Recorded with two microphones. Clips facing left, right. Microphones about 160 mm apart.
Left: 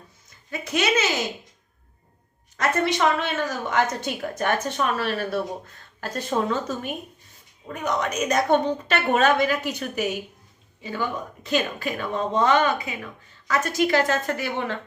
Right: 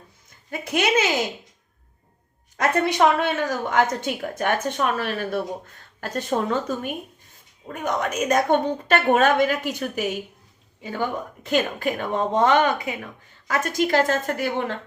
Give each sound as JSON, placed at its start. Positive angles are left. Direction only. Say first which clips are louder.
{"t": 0.5, "sound": "a woman's voice", "louder": "right 2 dB", "side_deg": -50}
{"t": 2.6, "sound": "a woman's voice", "louder": "right 3 dB", "side_deg": -50}